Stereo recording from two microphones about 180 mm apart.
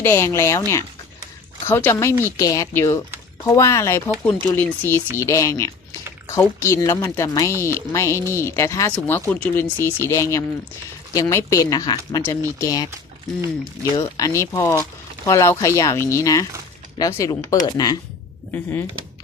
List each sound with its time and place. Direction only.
0.0 s speech: 15° left (ahead or behind)
1.6 s speech: 15° left (ahead or behind)
13.9 s speech: 20° left (ahead or behind)
18.5 s speech: 10° left (ahead or behind)